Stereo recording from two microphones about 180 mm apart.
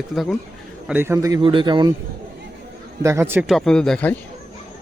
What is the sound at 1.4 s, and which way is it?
Speech, 25° right (ahead or behind).